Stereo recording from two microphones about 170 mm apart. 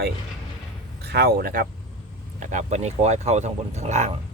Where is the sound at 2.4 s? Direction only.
45° right (ahead or behind).